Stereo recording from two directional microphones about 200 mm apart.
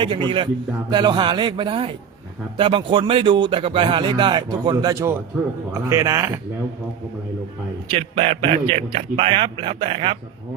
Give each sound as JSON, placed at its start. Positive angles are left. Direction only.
{"t": 0.0, "sound": "a man's voice", "side_deg": -25}
{"t": 7.9, "sound": "speech", "side_deg": -30}